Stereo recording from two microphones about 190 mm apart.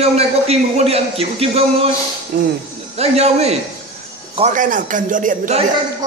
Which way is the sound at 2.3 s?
50° right (ahead or behind).